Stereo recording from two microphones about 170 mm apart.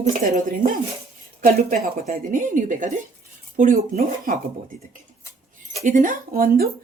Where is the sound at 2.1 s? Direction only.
50° right (ahead or behind).